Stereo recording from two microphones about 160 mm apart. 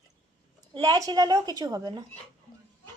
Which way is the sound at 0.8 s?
25° right (ahead or behind).